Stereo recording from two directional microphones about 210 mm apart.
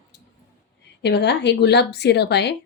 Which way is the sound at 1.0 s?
55° left (ahead or behind).